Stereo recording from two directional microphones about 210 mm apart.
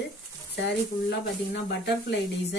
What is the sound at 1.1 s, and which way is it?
Speech, 50° left (ahead or behind).